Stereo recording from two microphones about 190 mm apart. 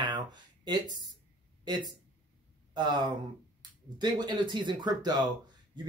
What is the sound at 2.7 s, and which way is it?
Speech, 25° right (ahead or behind).